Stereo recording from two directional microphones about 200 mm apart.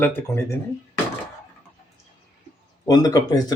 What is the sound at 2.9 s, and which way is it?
Speech, 20° left (ahead or behind).